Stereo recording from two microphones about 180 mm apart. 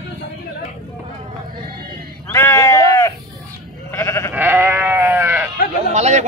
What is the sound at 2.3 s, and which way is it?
Bleat, 15° left (ahead or behind).